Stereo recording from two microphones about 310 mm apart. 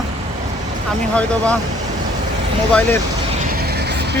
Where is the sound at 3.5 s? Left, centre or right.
Right.